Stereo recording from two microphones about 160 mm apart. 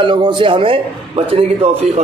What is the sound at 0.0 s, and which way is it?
A man's voice, 30° right (ahead or behind).